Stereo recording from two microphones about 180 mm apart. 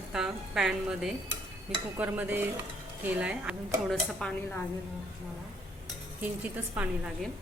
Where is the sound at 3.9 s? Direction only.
5° left (ahead or behind).